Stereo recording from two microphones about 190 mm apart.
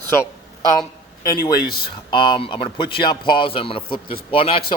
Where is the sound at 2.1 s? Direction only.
25° left (ahead or behind).